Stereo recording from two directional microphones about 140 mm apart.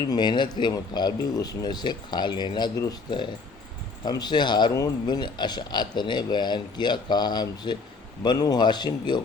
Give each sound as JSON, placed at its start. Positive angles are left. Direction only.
{"t": 0.1, "sound": "speech", "side_deg": 30}